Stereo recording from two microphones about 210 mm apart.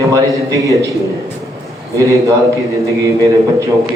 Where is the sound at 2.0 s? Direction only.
15° right (ahead or behind).